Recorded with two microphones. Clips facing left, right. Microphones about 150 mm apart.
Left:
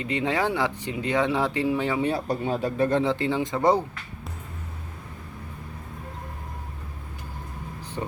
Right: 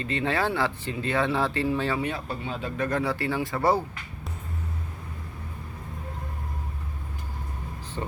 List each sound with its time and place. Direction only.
0.0 s speech: 15° left (ahead or behind)
2.0 s speech: 35° left (ahead or behind); by 3.8 s 20° left (ahead or behind)
8.0 s speech: 10° left (ahead or behind)